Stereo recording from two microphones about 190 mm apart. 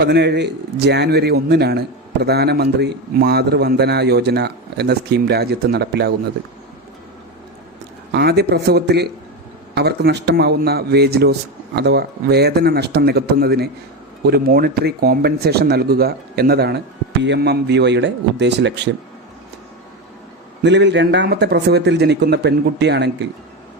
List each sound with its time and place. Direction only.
0.0 s a man's voice: 60° right (ahead or behind)
8.1 s a man's voice: 60° right (ahead or behind)
20.6 s a man's voice: 65° right (ahead or behind)